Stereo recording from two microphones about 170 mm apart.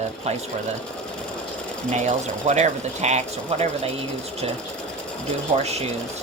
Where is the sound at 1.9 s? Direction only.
45° right (ahead or behind).